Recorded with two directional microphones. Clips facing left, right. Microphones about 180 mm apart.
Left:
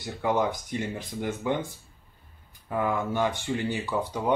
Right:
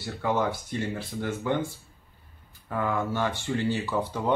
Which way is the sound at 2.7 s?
15° left (ahead or behind).